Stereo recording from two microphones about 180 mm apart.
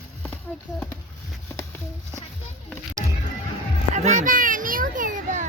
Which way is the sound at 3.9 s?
45° right (ahead or behind).